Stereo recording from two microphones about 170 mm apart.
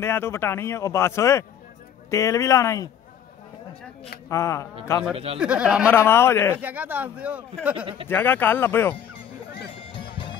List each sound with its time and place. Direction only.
0.0 s a man's voice: 15° left (ahead or behind)
4.3 s a man's voice: 15° left (ahead or behind)
5.1 s speech: 35° right (ahead or behind)
5.4 s speech: 5° right (ahead or behind)
5.9 s a man's voice: 15° left (ahead or behind)
6.6 s speech: 10° right (ahead or behind)
7.7 s speech: 30° right (ahead or behind)
8.1 s a man's voice: 10° left (ahead or behind)
9.9 s music: 30° left (ahead or behind)